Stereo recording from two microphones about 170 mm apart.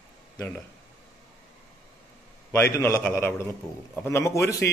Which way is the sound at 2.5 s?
15° left (ahead or behind).